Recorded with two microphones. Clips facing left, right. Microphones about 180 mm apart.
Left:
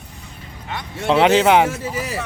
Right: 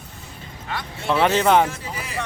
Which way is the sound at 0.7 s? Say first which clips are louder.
Left 5 dB; 20° left (ahead or behind).